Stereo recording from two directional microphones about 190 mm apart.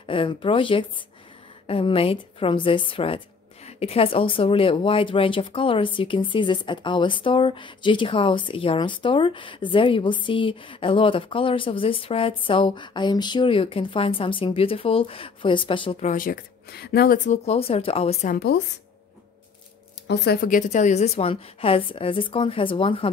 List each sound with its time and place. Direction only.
0.0 s speech: 25° left (ahead or behind)
16.1 s speech: 45° left (ahead or behind)
17.3 s speech: 30° left (ahead or behind)
18.3 s a woman's voice: 55° left (ahead or behind)
20.1 s speech: 55° left (ahead or behind); by 23.1 s 25° left (ahead or behind)